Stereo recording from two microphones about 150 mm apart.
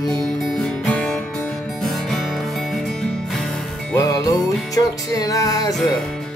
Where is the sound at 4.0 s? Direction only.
25° left (ahead or behind).